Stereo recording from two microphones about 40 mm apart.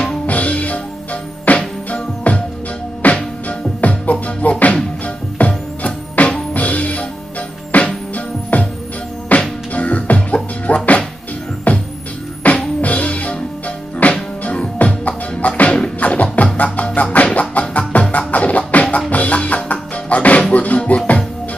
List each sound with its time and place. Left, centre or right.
0.3 s music: left